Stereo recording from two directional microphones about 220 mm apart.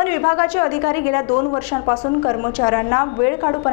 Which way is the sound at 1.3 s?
30° left (ahead or behind).